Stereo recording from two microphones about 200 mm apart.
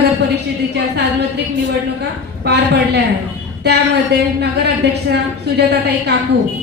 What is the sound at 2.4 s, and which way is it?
Speech, 55° right (ahead or behind).